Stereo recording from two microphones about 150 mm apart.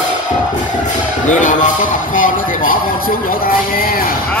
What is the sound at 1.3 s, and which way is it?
Speech, 55° left (ahead or behind).